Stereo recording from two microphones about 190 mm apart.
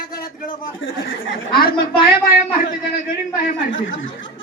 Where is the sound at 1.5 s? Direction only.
55° left (ahead or behind).